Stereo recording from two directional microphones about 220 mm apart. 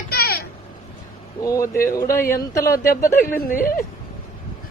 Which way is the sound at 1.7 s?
40° left (ahead or behind).